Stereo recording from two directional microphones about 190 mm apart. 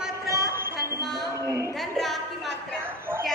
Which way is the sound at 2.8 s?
10° right (ahead or behind).